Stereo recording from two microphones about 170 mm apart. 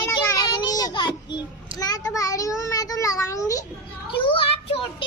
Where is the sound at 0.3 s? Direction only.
25° left (ahead or behind).